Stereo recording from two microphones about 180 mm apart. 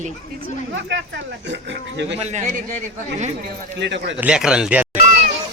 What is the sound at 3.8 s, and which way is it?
Speech, 75° right (ahead or behind).